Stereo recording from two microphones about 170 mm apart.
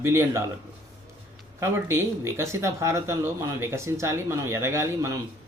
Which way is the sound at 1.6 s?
15° right (ahead or behind).